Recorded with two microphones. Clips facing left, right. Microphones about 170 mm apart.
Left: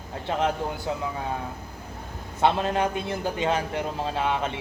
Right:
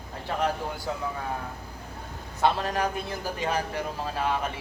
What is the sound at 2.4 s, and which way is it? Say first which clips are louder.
A man's voice: left 2 dB; 20° left (ahead or behind).